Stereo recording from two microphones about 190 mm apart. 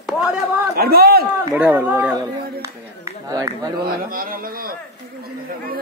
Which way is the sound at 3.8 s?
50° right (ahead or behind).